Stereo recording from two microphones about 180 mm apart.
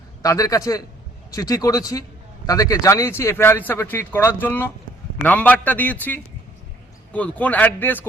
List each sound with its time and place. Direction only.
0.2 s a man's voice: 20° left (ahead or behind)